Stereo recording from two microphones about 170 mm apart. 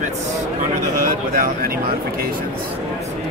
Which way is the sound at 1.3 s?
60° right (ahead or behind).